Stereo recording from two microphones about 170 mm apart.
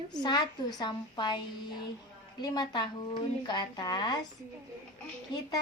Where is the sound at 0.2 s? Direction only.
25° left (ahead or behind).